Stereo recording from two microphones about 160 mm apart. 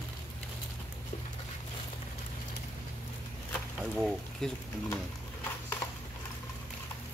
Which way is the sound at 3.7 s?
Centre (ahead or behind).